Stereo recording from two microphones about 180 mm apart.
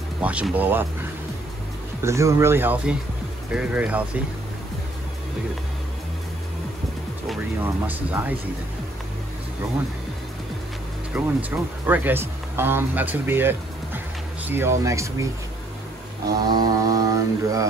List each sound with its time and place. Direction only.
0.2 s speech: 5° right (ahead or behind)
2.0 s speech: 15° right (ahead or behind)
7.6 s speech: 10° right (ahead or behind)
11.1 s speech: 10° right (ahead or behind)
16.4 s mantra: 20° right (ahead or behind)